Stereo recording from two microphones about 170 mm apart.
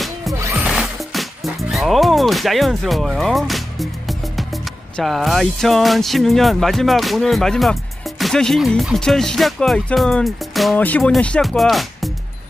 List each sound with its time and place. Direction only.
0.3 s music: 15° right (ahead or behind)
0.7 s music: centre (ahead or behind)